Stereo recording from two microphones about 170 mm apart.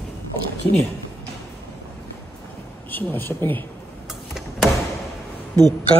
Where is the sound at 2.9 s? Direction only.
10° left (ahead or behind).